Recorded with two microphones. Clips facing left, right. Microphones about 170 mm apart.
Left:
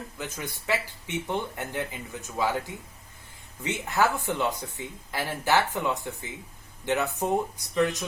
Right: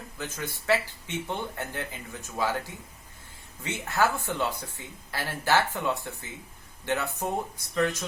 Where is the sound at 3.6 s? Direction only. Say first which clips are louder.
Left 1 dB; 20° left (ahead or behind).